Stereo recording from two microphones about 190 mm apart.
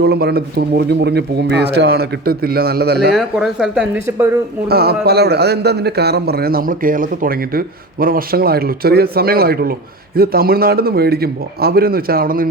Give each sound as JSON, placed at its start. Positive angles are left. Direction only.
{"t": 0.0, "sound": "speech", "side_deg": -55}
{"t": 3.1, "sound": "speech", "side_deg": 0}
{"t": 4.7, "sound": "a man's voice", "side_deg": -55}